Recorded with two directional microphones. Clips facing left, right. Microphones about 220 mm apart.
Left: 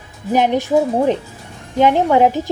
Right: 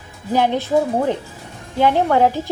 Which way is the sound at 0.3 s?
15° left (ahead or behind).